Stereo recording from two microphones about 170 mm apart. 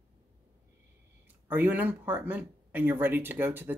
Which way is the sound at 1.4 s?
10° right (ahead or behind).